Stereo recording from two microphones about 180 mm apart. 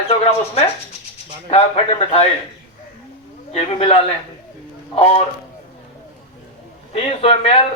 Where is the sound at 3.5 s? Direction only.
35° left (ahead or behind).